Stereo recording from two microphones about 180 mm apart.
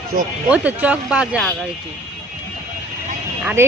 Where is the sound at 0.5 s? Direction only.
10° right (ahead or behind).